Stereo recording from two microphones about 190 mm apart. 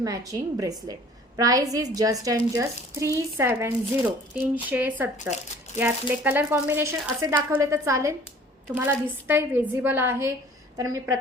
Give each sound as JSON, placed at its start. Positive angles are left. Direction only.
{"t": 0.0, "sound": "a woman's voice", "side_deg": -20}